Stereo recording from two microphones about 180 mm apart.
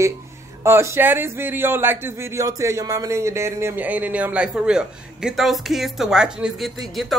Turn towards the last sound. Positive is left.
turn(degrees=0)  # may be behind; listen again after turning